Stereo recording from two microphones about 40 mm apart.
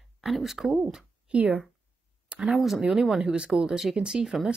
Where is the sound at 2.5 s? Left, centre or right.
Centre.